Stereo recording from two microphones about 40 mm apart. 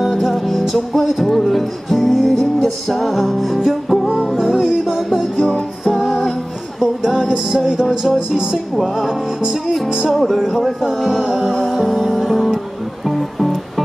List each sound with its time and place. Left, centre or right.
0.2 s music: centre
7.2 s music: centre
10.1 s male singing: centre
11.5 s music: centre